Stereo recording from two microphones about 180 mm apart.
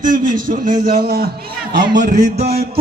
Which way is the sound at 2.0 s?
55° right (ahead or behind).